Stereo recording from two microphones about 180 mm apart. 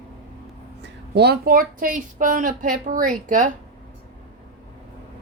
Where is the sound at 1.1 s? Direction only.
60° right (ahead or behind); by 3.5 s 45° right (ahead or behind).